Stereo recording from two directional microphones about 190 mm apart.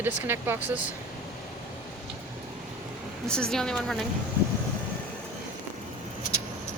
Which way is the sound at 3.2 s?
5° left (ahead or behind).